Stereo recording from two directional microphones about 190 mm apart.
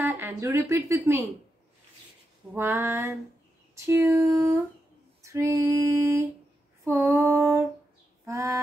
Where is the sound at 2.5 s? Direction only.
15° right (ahead or behind).